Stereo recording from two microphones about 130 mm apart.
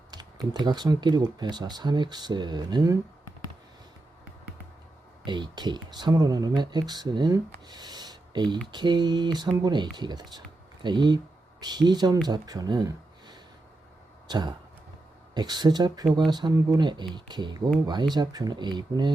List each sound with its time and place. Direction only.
0.1 s speech: 35° right (ahead or behind)
5.2 s speech: 35° right (ahead or behind)